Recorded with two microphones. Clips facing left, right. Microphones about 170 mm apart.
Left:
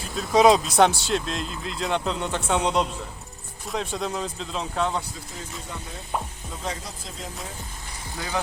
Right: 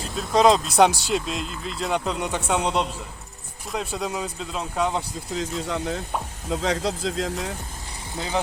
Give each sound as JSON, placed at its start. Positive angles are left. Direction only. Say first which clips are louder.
{"t": 0.1, "sound": "speech", "louder": "left 1 dB", "side_deg": 0}
{"t": 5.4, "sound": "speech", "louder": "right 11 dB", "side_deg": -90}
{"t": 8.1, "sound": "speech", "louder": "right 3 dB", "side_deg": -25}